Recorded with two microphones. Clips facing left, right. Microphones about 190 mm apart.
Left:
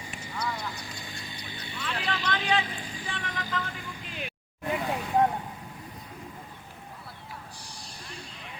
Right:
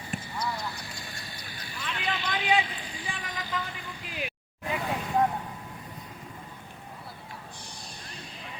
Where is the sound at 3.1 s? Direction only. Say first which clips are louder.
Left 1 dB; 10° right (ahead or behind).